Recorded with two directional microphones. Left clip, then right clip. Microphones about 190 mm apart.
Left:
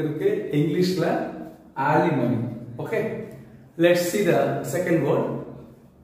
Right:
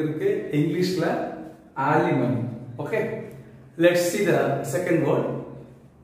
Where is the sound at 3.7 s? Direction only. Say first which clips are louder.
Even; 5° right (ahead or behind).